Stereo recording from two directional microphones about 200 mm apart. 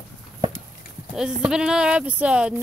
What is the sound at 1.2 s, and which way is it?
Speech, 5° right (ahead or behind).